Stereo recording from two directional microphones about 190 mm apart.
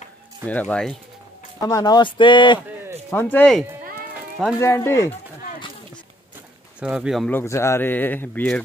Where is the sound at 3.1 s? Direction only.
10° left (ahead or behind).